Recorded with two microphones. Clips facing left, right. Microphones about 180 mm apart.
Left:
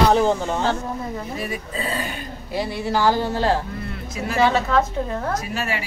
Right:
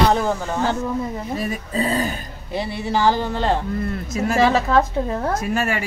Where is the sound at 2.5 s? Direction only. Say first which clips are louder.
Even; 5° left (ahead or behind).